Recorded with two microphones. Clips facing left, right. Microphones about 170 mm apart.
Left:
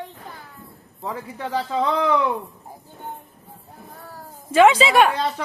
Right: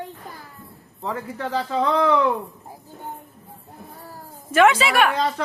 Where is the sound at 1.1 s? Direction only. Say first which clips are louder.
Right 1 dB; 15° left (ahead or behind).